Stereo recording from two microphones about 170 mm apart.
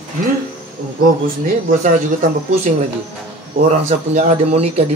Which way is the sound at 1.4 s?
50° right (ahead or behind).